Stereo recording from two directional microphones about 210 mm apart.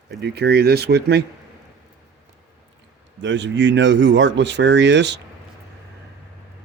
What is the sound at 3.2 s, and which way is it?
Speech, 60° right (ahead or behind).